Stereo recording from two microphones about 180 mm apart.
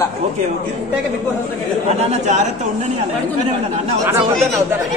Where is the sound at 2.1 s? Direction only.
40° right (ahead or behind).